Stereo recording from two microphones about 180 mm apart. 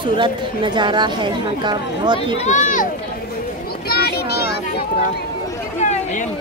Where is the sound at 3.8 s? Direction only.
60° left (ahead or behind).